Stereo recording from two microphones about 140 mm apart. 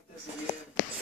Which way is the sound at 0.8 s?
65° left (ahead or behind).